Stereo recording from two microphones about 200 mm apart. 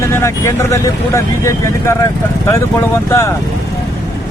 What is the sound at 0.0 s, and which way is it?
Speech, 15° left (ahead or behind).